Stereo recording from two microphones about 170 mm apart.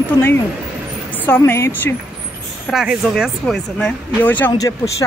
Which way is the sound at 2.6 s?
Centre (ahead or behind).